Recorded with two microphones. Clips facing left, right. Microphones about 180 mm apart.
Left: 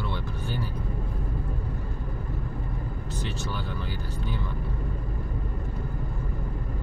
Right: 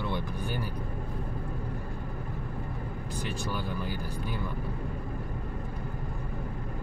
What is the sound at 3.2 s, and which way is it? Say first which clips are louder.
Speech: even; 10° right (ahead or behind).